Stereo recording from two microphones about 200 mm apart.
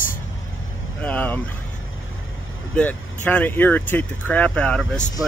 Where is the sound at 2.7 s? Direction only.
10° left (ahead or behind).